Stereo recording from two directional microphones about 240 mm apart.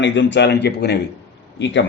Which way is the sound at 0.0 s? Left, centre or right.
Left.